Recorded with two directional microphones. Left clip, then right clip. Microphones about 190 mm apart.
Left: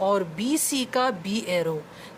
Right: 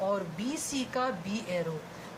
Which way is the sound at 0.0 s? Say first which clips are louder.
Left 8 dB; 50° left (ahead or behind).